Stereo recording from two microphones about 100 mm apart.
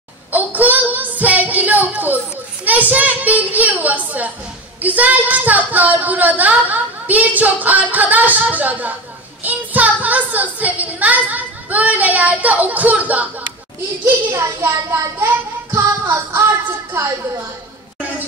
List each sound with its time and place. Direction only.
0.3 s a sound: 15° right (ahead or behind)
2.6 s speech: 15° right (ahead or behind)
14.0 s a child's voice: 25° right (ahead or behind)